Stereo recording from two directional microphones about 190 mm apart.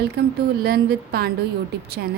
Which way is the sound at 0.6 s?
55° right (ahead or behind).